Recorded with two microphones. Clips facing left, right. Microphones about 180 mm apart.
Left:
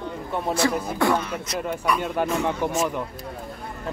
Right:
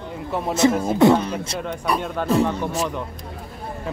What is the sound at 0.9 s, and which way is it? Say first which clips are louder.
Speech: right 7 dB; 25° right (ahead or behind).